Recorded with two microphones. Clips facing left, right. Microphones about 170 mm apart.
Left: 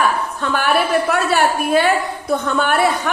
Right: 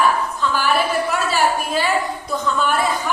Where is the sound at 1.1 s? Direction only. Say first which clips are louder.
Left 3 dB; 60° left (ahead or behind).